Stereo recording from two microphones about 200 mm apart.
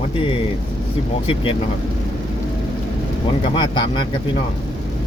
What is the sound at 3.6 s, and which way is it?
Speech, 20° left (ahead or behind).